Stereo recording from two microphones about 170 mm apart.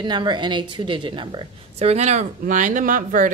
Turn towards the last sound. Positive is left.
turn(degrees=-50)  # may be behind; listen again after turning